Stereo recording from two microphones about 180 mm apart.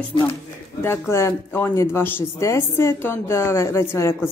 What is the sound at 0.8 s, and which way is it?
Speech, 15° left (ahead or behind).